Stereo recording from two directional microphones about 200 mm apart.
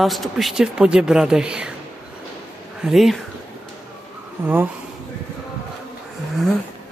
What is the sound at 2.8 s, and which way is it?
Speech, centre (ahead or behind).